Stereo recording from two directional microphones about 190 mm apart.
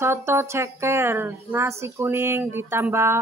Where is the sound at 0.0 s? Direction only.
15° right (ahead or behind).